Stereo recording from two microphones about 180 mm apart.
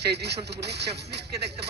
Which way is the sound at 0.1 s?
65° right (ahead or behind).